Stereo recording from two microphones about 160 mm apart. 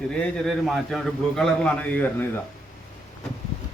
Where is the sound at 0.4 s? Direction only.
Centre (ahead or behind).